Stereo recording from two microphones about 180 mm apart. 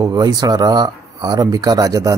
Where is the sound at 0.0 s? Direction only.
20° right (ahead or behind).